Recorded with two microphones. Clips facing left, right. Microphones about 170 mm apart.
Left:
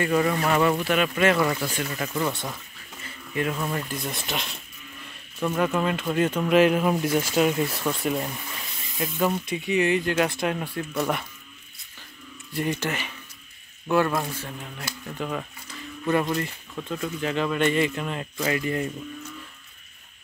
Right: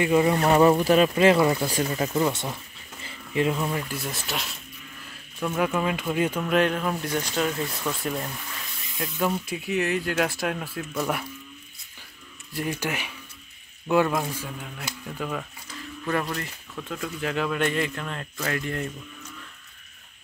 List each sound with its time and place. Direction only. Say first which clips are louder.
0.0 s speech: right 2 dB; 20° right (ahead or behind)
0.4 s speech: right 4 dB; 35° right (ahead or behind)
2.2 s speech: right 2 dB; 15° right (ahead or behind)
3.0 s bee: right 3 dB; 25° right (ahead or behind)
3.5 s speech: right 1 dB; 5° right (ahead or behind)
6.4 s speech: left 7 dB; 5° left (ahead or behind)
7.6 s speech: left 3 dB; 5° left (ahead or behind)
12.5 s speech: left 2 dB; 5° right (ahead or behind)
15.0 s speech: left 1 dB; centre (ahead or behind)